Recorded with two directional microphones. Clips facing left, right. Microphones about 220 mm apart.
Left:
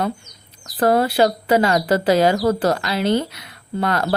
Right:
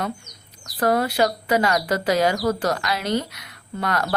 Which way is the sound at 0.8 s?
30° left (ahead or behind).